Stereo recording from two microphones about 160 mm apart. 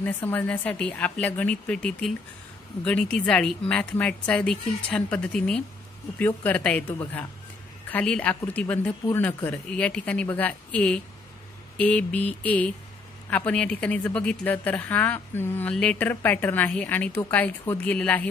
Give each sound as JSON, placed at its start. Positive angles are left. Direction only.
{"t": 0.0, "sound": "a woman's voice", "side_deg": 10}